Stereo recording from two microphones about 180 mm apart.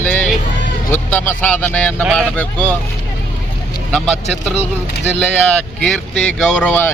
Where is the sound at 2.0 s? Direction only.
5° right (ahead or behind).